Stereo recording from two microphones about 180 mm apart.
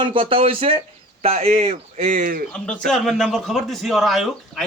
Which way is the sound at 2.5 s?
5° left (ahead or behind).